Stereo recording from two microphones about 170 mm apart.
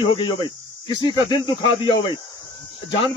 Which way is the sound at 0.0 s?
30° left (ahead or behind).